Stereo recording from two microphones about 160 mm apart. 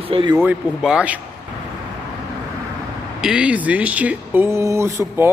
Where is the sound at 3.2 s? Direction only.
5° right (ahead or behind).